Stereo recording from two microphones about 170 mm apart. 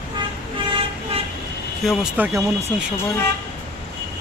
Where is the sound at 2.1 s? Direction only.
15° right (ahead or behind).